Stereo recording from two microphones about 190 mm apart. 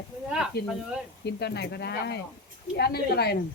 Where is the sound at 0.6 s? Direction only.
60° left (ahead or behind).